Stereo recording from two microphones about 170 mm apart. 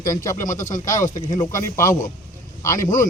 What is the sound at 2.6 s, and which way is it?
Speech, 15° left (ahead or behind).